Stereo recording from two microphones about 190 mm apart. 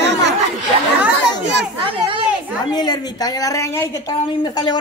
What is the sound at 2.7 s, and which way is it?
A woman's voice, 20° left (ahead or behind).